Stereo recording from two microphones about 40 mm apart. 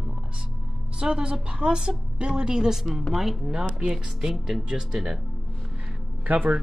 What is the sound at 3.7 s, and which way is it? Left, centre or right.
A woman's voice, centre.